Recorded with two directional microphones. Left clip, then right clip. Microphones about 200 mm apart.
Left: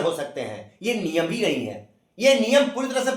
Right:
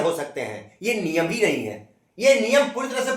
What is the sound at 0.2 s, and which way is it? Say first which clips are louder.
A man's voice: right 1 dB; 10° right (ahead or behind).